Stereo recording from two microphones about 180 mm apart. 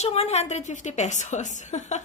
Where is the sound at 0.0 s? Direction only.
35° left (ahead or behind).